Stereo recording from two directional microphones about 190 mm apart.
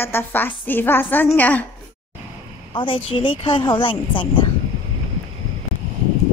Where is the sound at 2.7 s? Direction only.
25° left (ahead or behind).